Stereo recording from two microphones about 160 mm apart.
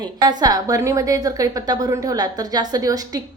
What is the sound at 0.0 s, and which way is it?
A woman's voice, 25° right (ahead or behind).